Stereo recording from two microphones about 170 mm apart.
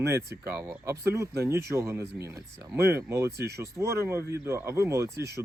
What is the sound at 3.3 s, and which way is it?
Speech, 70° right (ahead or behind).